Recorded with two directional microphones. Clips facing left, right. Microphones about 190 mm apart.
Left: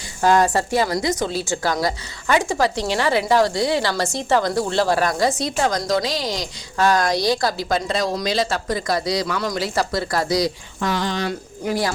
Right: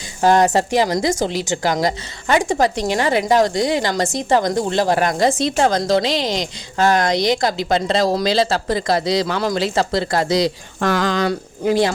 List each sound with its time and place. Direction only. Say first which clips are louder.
0.2 s a woman's voice: right 3 dB; 20° right (ahead or behind)
10.8 s speech: right 5 dB; 80° right
11.6 s a woman's voice: right 6 dB; 25° right (ahead or behind)